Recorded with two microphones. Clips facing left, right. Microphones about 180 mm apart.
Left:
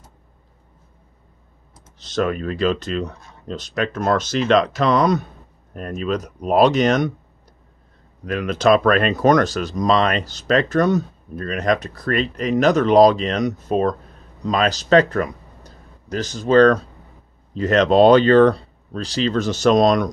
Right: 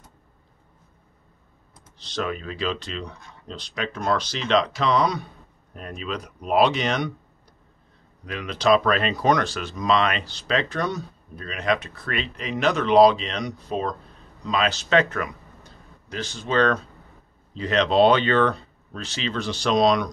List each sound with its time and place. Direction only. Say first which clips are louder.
2.0 s speech: left 7 dB; 45° left (ahead or behind)
8.3 s speech: left 4 dB; 50° left (ahead or behind)